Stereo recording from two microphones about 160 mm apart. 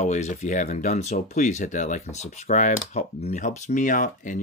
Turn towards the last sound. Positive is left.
turn(degrees=55)  # may be behind; listen again after turning